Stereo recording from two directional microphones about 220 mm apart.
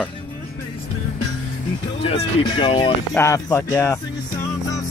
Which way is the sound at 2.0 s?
25° left (ahead or behind).